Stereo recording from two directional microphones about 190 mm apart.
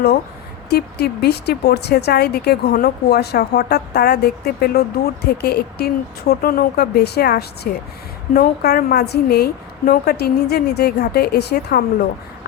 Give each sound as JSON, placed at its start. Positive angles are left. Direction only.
{"t": 0.7, "sound": "speech", "side_deg": 60}